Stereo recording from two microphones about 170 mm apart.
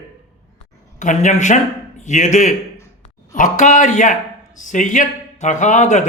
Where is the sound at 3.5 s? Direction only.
45° left (ahead or behind).